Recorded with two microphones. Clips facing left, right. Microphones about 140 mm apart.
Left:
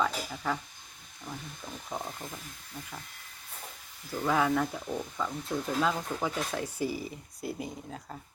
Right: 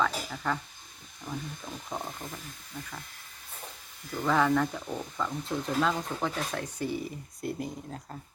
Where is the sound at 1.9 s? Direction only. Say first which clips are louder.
Even; 5° left (ahead or behind).